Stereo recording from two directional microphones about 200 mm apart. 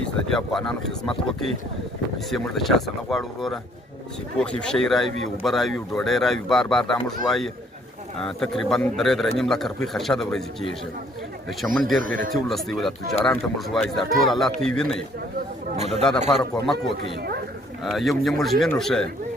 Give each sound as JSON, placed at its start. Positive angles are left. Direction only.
{"t": 0.0, "sound": "speech", "side_deg": 0}
{"t": 11.6, "sound": "a man's voice", "side_deg": 10}
{"t": 11.9, "sound": "speech", "side_deg": -45}
{"t": 12.3, "sound": "speech", "side_deg": 0}
{"t": 15.7, "sound": "a man's voice", "side_deg": -35}
{"t": 16.6, "sound": "speech", "side_deg": 0}
{"t": 17.2, "sound": "speech", "side_deg": -50}
{"t": 17.8, "sound": "speech", "side_deg": 0}